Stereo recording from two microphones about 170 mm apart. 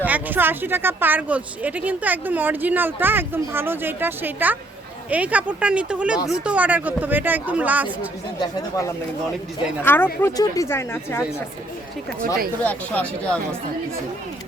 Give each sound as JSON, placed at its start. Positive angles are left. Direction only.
{"t": 0.0, "sound": "speech", "side_deg": -10}
{"t": 8.4, "sound": "speech", "side_deg": 20}
{"t": 12.6, "sound": "speech", "side_deg": 10}